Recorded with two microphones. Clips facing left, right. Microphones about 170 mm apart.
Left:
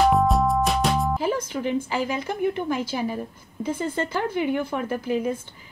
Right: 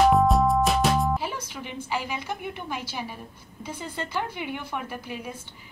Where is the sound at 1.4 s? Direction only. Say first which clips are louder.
Left 11 dB; 50° left (ahead or behind).